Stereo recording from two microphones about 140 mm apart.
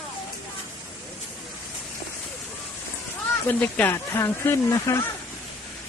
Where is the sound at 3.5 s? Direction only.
10° left (ahead or behind).